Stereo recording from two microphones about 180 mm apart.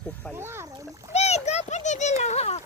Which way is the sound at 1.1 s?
35° left (ahead or behind).